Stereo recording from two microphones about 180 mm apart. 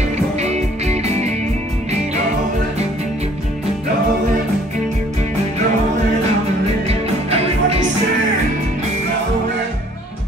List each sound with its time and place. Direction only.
0.4 s music: 35° right (ahead or behind)
7.2 s music: 35° right (ahead or behind)